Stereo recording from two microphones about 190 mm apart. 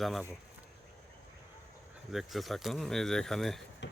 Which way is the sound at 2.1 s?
Centre (ahead or behind).